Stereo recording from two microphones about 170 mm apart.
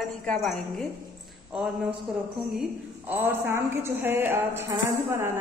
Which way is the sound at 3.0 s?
10° right (ahead or behind).